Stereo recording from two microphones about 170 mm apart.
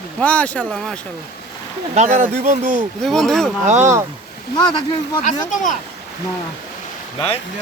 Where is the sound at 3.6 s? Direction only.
45° right (ahead or behind).